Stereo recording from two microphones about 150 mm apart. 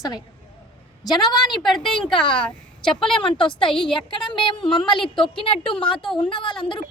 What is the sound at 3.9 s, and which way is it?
Speech, 35° left (ahead or behind).